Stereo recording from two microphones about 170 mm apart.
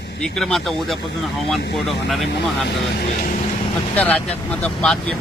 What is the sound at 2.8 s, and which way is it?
Speech, 75° left (ahead or behind).